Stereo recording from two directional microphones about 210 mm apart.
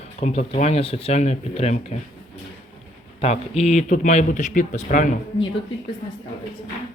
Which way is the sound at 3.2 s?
30° left (ahead or behind).